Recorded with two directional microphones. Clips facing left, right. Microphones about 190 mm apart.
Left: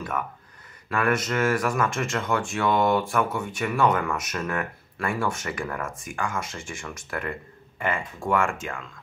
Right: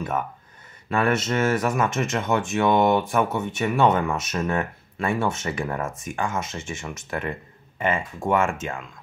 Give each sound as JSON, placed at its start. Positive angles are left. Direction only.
{"t": 0.8, "sound": "speech", "side_deg": -25}